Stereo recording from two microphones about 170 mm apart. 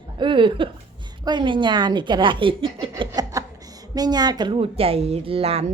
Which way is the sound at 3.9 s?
25° right (ahead or behind).